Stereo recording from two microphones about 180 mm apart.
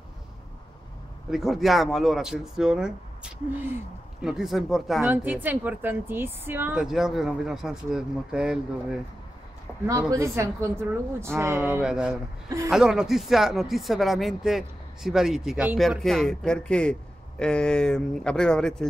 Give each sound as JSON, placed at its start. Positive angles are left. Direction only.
{"t": 1.3, "sound": "a woman's voice", "side_deg": 0}
{"t": 9.8, "sound": "a woman's voice", "side_deg": -15}